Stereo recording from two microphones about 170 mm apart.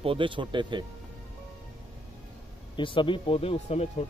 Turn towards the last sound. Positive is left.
turn(degrees=35)  # may be behind; listen again after turning